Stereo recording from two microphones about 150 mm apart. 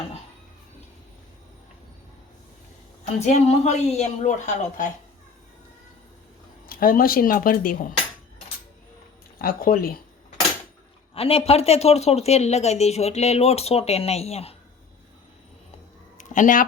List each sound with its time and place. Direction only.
3.2 s a woman's voice: 50° left (ahead or behind)
6.7 s speech: 70° left (ahead or behind)
9.4 s speech: 80° left
11.1 s a woman's voice: 40° left (ahead or behind)
16.1 s a sound: 60° left (ahead or behind)